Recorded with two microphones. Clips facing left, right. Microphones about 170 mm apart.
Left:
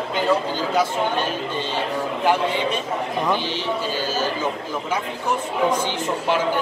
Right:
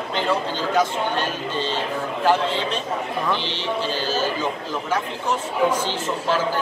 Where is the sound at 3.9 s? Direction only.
10° left (ahead or behind).